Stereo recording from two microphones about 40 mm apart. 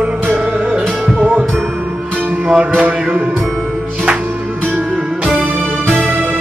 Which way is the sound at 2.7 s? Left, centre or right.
Right.